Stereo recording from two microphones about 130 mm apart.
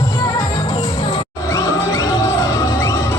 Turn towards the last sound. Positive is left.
turn(degrees=25)  # may be behind; listen again after turning